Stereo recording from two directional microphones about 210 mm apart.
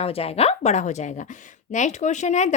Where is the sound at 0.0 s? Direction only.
30° left (ahead or behind).